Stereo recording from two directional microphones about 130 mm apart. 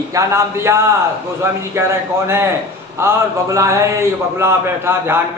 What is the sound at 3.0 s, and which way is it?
A man's voice, 20° right (ahead or behind).